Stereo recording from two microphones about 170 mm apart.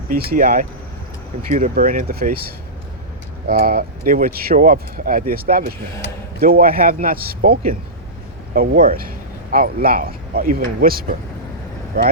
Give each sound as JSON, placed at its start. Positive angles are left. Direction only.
{"t": 0.1, "sound": "speech", "side_deg": -60}
{"t": 3.4, "sound": "speech", "side_deg": -60}